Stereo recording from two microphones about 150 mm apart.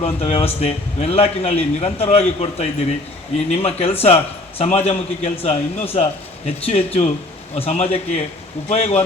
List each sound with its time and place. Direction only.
0.0 s a man's voice: 45° left (ahead or behind)